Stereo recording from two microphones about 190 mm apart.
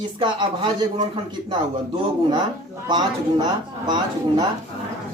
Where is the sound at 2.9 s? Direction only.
20° right (ahead or behind).